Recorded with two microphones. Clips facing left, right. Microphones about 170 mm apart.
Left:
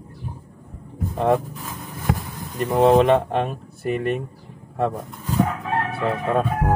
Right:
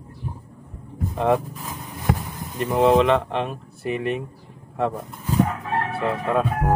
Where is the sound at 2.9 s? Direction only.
45° left (ahead or behind).